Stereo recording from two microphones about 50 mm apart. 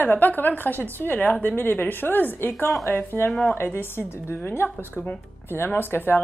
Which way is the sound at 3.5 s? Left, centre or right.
Left.